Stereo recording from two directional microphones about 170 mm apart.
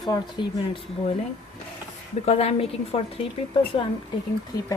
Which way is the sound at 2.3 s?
40° left (ahead or behind).